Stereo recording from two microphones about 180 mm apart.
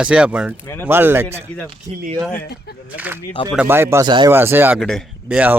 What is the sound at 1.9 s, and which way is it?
Speech, 50° right (ahead or behind).